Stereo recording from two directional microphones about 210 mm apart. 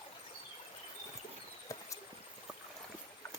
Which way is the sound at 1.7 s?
15° left (ahead or behind).